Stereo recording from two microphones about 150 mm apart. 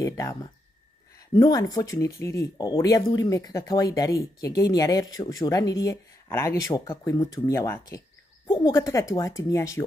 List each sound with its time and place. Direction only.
0.0 s speech: 20° left (ahead or behind)